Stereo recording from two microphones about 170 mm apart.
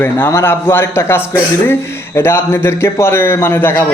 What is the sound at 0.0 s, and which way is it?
Speech, 15° left (ahead or behind).